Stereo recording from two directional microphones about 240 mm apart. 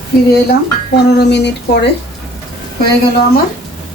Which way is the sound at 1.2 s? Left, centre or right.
Left.